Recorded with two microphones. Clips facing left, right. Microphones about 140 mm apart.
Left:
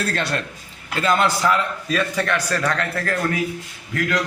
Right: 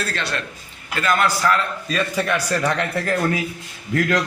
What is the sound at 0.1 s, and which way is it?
Speech, 50° left (ahead or behind).